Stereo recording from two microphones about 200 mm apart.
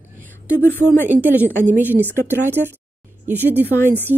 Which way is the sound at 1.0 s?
10° right (ahead or behind).